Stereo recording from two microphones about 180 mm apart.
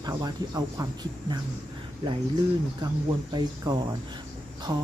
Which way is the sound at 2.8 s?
25° right (ahead or behind).